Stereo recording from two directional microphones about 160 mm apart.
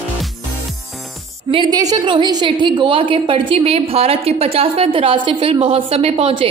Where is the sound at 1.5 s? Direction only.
30° right (ahead or behind).